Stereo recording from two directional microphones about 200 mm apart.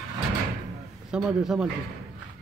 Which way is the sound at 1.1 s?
5° right (ahead or behind).